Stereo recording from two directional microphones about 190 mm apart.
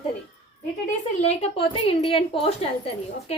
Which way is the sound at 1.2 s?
35° left (ahead or behind).